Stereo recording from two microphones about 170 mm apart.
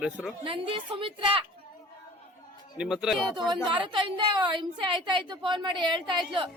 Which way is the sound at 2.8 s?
5° right (ahead or behind).